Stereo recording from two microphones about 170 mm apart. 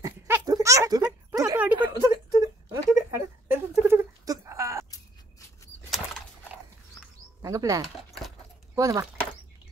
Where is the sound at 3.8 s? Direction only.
15° right (ahead or behind).